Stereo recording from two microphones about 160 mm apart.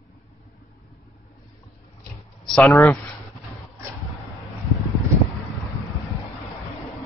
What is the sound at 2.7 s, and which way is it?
Speech, 15° left (ahead or behind).